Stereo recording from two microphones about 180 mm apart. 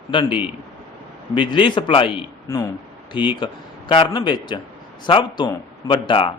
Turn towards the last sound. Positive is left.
turn(degrees=30)  # may be behind; listen again after turning